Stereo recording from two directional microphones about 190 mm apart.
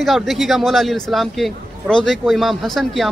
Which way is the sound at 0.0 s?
Centre (ahead or behind).